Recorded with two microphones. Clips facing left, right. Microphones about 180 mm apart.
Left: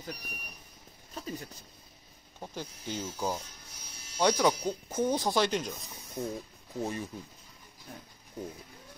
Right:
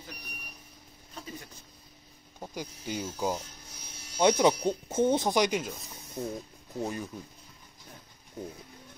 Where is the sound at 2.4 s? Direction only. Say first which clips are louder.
Right 1 dB; 10° right (ahead or behind).